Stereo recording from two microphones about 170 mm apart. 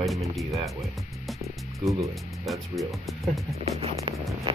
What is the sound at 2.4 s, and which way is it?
Speech, centre (ahead or behind).